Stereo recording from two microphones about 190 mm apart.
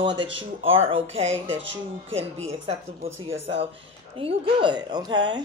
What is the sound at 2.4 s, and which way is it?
Speech, 30° right (ahead or behind).